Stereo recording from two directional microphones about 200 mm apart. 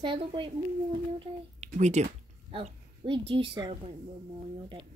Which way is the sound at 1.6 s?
35° right (ahead or behind).